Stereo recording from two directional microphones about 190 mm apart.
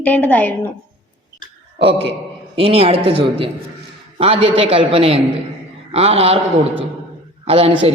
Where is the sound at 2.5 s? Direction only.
30° right (ahead or behind).